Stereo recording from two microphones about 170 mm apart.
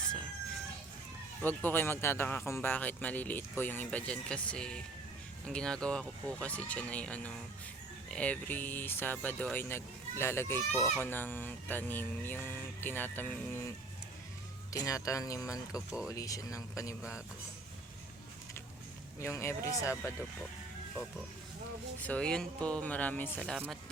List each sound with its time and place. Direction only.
1.4 s speech: 10° left (ahead or behind)
17.0 s speech: 5° right (ahead or behind)
19.2 s speech: 15° left (ahead or behind)
22.0 s speech: 5° left (ahead or behind)